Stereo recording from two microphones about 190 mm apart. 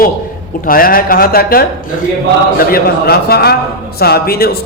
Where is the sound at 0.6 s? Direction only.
50° left (ahead or behind).